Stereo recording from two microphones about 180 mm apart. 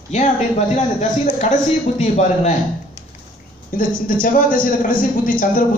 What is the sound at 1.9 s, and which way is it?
Speech, 40° left (ahead or behind).